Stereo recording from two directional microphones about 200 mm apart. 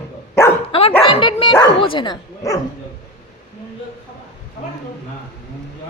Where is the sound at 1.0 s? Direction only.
25° left (ahead or behind).